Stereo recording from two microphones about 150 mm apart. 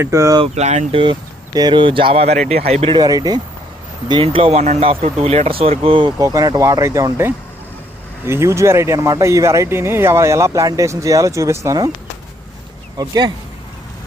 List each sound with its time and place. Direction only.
0.0 s speech: 20° right (ahead or behind)
0.4 s speech: 45° right (ahead or behind)
1.5 s speech: 30° right (ahead or behind)
3.0 s speech: 25° right (ahead or behind)
4.1 s speech: 35° right (ahead or behind); by 11.9 s 20° right (ahead or behind)
13.0 s speech: 25° right (ahead or behind)